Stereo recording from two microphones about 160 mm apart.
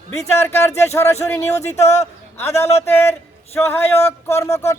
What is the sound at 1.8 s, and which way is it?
Speech, 45° left (ahead or behind).